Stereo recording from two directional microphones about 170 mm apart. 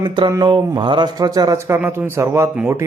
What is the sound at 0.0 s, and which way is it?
Speech, 25° right (ahead or behind).